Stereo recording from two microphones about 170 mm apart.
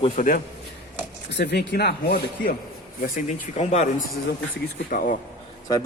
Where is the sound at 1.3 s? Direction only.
80° left; by 2.6 s 65° left (ahead or behind).